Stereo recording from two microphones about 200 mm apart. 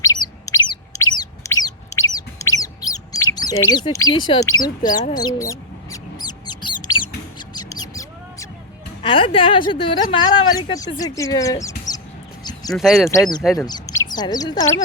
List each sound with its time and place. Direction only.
0.0 s bird: 15° left (ahead or behind)
1.1 s chicken: 20° left (ahead or behind)
4.5 s speech: 20° left (ahead or behind)
5.1 s a sound: 15° left (ahead or behind)
6.8 s bird: 20° left (ahead or behind)
9.0 s speech: 25° left (ahead or behind)
12.4 s a sound: 20° left (ahead or behind)
12.7 s speech: centre (ahead or behind)
13.7 s speech: 20° left (ahead or behind)